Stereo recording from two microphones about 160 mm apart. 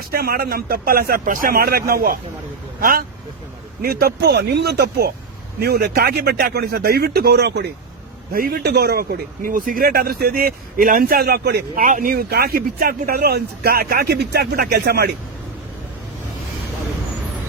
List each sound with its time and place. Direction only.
0.0 s speech: 70° right (ahead or behind)
3.8 s speech: 70° right (ahead or behind); by 7.7 s 90° right
8.3 s speech: 65° right (ahead or behind)
11.7 s speech: 55° right (ahead or behind); by 15.1 s 90° right